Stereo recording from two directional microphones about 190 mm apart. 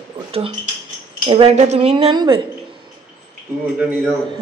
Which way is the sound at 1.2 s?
30° right (ahead or behind).